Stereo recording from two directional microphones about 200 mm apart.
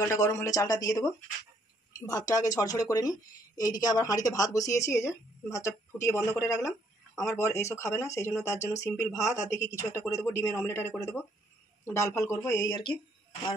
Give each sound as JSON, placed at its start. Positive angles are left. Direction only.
{"t": 0.1, "sound": "a woman's voice", "side_deg": 15}